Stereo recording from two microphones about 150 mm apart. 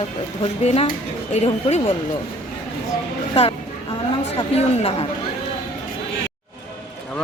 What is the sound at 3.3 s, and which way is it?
Speech, 40° left (ahead or behind).